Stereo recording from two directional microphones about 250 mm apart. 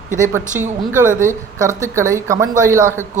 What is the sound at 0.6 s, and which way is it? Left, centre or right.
Speech, centre.